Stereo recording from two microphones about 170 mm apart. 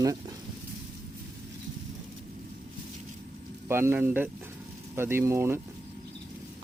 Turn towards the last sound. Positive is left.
turn(degrees=-15)  # may be behind; listen again after turning